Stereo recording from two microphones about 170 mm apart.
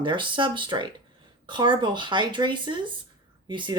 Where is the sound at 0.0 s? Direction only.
30° right (ahead or behind).